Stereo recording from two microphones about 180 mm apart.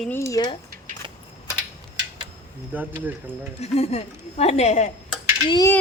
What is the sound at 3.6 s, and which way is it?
A woman's voice, 35° left (ahead or behind).